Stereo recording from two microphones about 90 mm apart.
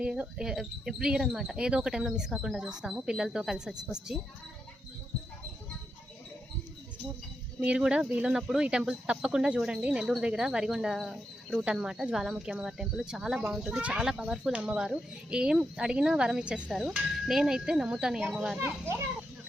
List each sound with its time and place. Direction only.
0.0 s speech: 10° right (ahead or behind)
7.6 s speech: 10° right (ahead or behind)
18.6 s a child's voice: 30° right (ahead or behind)